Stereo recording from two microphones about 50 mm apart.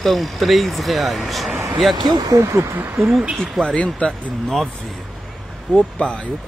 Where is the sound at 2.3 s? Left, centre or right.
Right.